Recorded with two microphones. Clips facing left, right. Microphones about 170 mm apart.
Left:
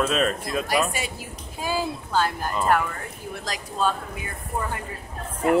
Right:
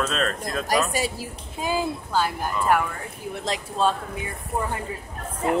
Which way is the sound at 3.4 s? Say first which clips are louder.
Right 2 dB; 25° right (ahead or behind).